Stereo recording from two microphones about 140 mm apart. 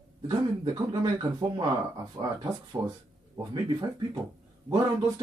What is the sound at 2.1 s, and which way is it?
Speech, 25° right (ahead or behind).